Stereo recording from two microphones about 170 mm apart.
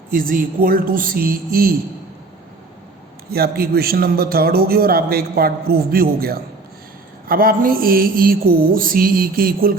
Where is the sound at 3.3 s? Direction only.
65° right (ahead or behind).